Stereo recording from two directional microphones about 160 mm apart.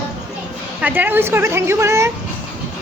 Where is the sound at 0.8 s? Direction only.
10° right (ahead or behind).